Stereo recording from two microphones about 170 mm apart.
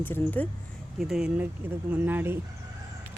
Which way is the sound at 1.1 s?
5° right (ahead or behind).